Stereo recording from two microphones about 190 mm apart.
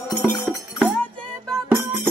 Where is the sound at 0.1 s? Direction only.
10° left (ahead or behind).